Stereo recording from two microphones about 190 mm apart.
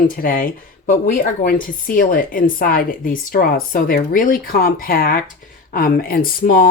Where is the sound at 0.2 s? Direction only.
50° left (ahead or behind).